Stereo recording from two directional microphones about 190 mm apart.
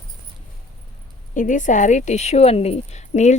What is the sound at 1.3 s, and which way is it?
A woman's voice, 45° left (ahead or behind).